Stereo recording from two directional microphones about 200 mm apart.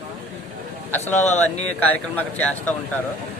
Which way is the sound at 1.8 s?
10° left (ahead or behind).